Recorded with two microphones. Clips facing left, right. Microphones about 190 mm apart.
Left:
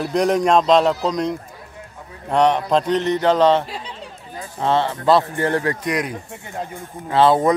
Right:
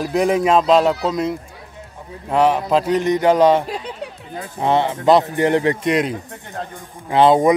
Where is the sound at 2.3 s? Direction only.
5° right (ahead or behind).